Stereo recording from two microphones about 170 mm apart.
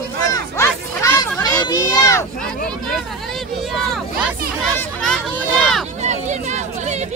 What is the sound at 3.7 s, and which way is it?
Speech, centre (ahead or behind).